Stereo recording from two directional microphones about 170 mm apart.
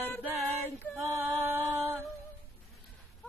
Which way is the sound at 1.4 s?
10° right (ahead or behind).